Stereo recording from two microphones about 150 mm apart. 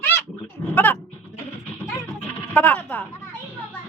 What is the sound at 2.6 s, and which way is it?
Speech, 10° left (ahead or behind).